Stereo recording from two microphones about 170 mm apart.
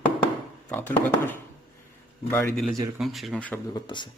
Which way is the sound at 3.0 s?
Centre (ahead or behind).